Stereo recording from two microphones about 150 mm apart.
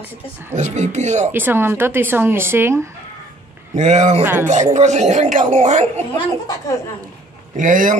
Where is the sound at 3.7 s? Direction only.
50° right (ahead or behind).